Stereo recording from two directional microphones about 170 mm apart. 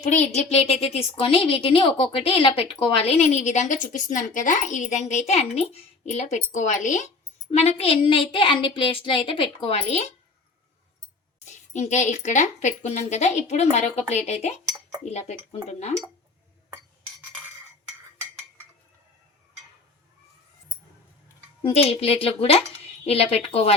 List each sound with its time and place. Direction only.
0.0 s a woman's voice: 40° left (ahead or behind)
11.4 s a woman's voice: 45° left (ahead or behind)
16.6 s a sound: 15° right (ahead or behind)
21.6 s a woman's voice: 35° left (ahead or behind)